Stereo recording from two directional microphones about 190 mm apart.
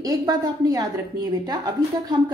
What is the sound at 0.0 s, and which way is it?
A woman's voice, 20° right (ahead or behind).